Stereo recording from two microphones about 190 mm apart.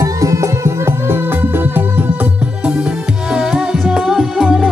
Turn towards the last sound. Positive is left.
turn(degrees=0)  # may be behind; listen again after turning